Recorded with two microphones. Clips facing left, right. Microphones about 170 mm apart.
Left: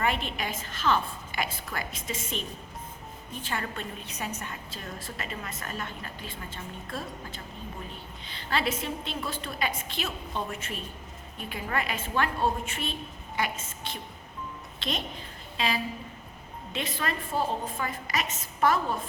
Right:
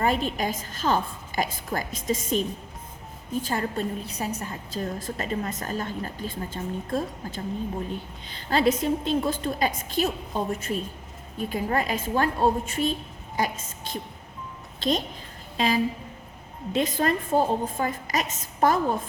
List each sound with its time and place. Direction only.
0.0 s a woman's voice: 40° right (ahead or behind)
3.4 s a woman's voice: 35° right (ahead or behind)